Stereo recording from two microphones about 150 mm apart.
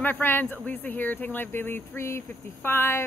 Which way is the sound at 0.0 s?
15° left (ahead or behind).